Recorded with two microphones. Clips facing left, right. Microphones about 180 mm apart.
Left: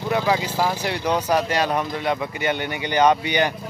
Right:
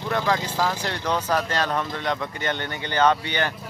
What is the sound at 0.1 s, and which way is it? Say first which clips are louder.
Speech: left 3 dB; 10° left (ahead or behind).